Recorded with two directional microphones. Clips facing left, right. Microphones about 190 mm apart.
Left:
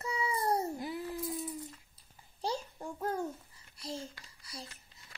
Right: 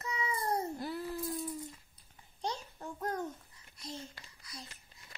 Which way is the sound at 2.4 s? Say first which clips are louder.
Left 3 dB; 10° left (ahead or behind).